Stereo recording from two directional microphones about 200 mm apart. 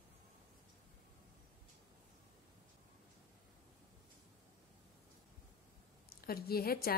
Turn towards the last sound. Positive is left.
turn(degrees=50)  # may be behind; listen again after turning